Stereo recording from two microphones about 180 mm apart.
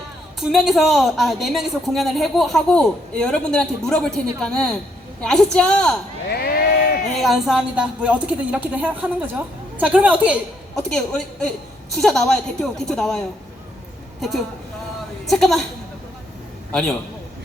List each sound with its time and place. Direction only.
0.3 s a woman's voice: centre (ahead or behind)
6.2 s a sound: 60° left (ahead or behind)
7.1 s speech: centre (ahead or behind)
10.8 s a woman's voice: 5° left (ahead or behind)